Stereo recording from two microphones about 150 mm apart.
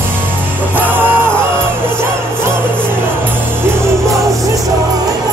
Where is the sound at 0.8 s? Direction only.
15° right (ahead or behind).